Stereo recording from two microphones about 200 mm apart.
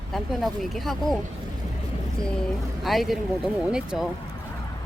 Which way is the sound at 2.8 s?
Centre (ahead or behind).